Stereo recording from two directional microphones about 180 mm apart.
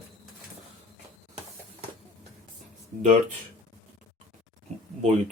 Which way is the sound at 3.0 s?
40° right (ahead or behind).